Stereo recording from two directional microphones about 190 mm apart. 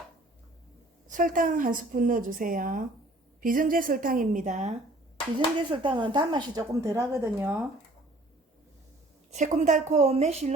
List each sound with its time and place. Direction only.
1.0 s a woman's voice: 45° right (ahead or behind)
5.7 s speech: 25° right (ahead or behind)
7.4 s speech: centre (ahead or behind)
9.3 s a woman's voice: 40° right (ahead or behind)